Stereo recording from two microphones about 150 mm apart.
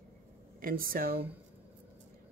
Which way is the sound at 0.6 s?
70° right (ahead or behind).